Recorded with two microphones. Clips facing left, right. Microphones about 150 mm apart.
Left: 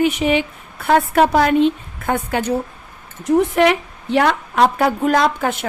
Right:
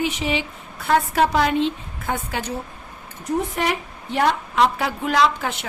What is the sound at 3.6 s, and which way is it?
Speech, 75° left (ahead or behind).